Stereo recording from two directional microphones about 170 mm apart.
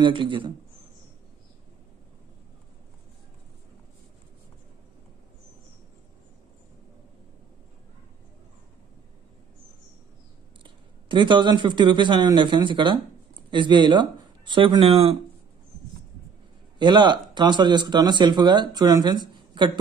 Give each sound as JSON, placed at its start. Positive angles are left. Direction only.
{"t": 0.0, "sound": "speech", "side_deg": -30}
{"t": 10.6, "sound": "speech", "side_deg": -30}
{"t": 16.7, "sound": "speech", "side_deg": -25}